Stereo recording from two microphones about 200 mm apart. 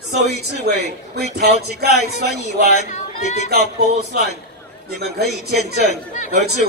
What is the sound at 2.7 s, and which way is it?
Speech, 35° left (ahead or behind).